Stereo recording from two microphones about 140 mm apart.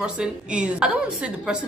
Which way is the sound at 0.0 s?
5° right (ahead or behind).